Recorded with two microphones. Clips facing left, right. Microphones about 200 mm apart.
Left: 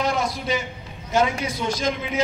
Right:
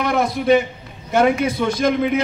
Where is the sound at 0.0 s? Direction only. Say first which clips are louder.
Right 5 dB; 60° right (ahead or behind).